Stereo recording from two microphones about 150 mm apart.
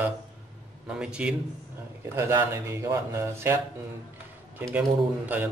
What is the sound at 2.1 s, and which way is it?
Speech, 20° right (ahead or behind).